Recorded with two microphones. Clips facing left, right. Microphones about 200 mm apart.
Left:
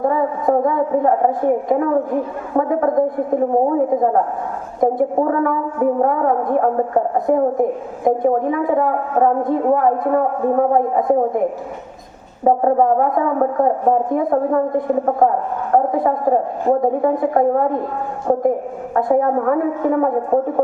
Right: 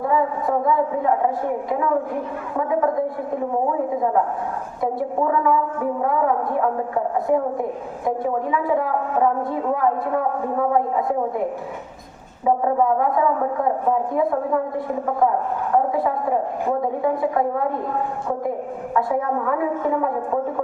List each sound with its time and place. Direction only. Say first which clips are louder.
0.0 s a woman's voice: left 4 dB; 45° left (ahead or behind)
12.5 s a woman's voice: left 5 dB; 45° left (ahead or behind)
15.7 s a woman's voice: left 4 dB; 50° left (ahead or behind)
18.9 s a woman's voice: left 6 dB; 45° left (ahead or behind)